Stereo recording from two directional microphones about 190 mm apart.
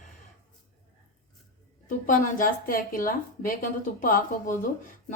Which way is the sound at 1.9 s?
45° left (ahead or behind).